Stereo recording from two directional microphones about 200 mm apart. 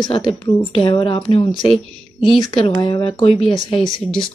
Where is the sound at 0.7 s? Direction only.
30° left (ahead or behind).